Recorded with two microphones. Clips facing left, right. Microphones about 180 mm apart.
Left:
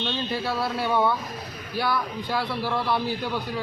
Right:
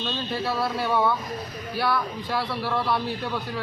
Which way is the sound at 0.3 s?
Centre (ahead or behind).